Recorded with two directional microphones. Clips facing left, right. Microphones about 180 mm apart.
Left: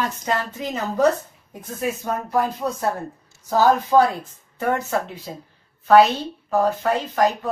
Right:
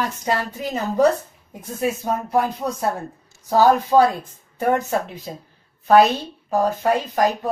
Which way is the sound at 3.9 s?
10° right (ahead or behind).